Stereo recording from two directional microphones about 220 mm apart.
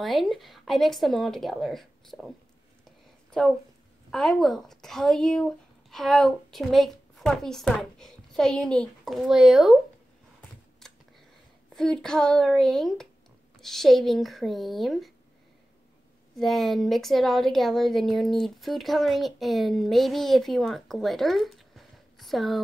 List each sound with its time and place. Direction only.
0.0 s speech: centre (ahead or behind)
3.3 s a sound: centre (ahead or behind)
4.1 s speech: centre (ahead or behind)
10.8 s a sound: centre (ahead or behind)
11.7 s speech: centre (ahead or behind)
16.3 s speech: centre (ahead or behind)